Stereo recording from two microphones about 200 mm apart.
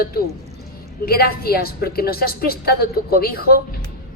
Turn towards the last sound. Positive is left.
turn(degrees=50)  # may be behind; listen again after turning